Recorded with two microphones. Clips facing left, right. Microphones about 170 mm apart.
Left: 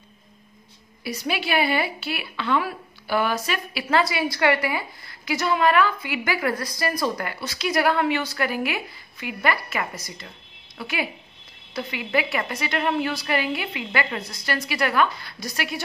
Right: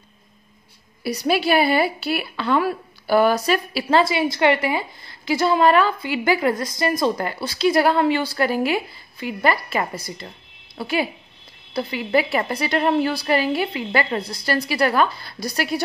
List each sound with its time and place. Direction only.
1.0 s a woman's voice: 40° right (ahead or behind)